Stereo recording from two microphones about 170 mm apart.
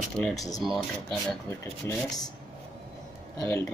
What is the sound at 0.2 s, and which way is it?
Speech, centre (ahead or behind).